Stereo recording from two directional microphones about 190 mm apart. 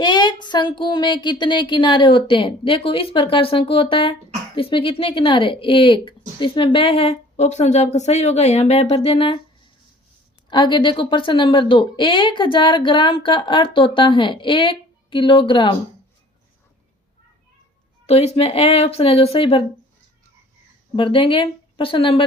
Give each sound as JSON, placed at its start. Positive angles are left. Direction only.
{"t": 0.0, "sound": "a woman's voice", "side_deg": 25}
{"t": 10.5, "sound": "a woman's voice", "side_deg": 25}
{"t": 18.0, "sound": "speech", "side_deg": 35}
{"t": 20.9, "sound": "a woman's voice", "side_deg": 25}